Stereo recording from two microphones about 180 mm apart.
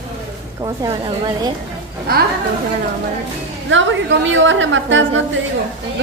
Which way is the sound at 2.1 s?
55° right (ahead or behind).